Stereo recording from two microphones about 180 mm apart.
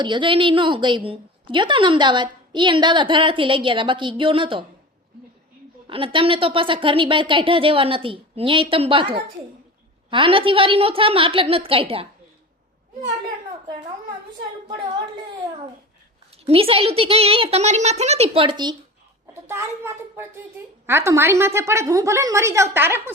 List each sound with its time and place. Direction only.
0.0 s a woman's voice: 25° right (ahead or behind)
5.9 s a woman's voice: 30° right (ahead or behind)
16.4 s a child's voice: 30° right (ahead or behind)
19.5 s a woman's voice: 15° right (ahead or behind)